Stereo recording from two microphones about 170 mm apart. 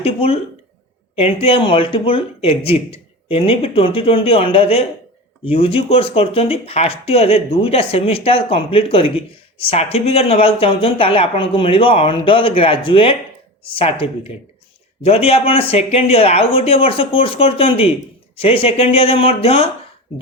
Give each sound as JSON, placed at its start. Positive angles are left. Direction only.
{"t": 0.0, "sound": "speech", "side_deg": 35}